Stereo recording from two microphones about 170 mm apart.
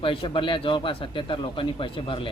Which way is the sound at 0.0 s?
30° left (ahead or behind).